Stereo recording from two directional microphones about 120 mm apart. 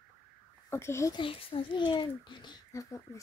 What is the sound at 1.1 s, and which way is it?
A child's voice, 50° left (ahead or behind).